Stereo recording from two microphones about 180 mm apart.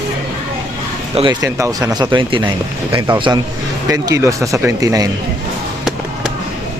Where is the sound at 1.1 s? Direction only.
30° right (ahead or behind).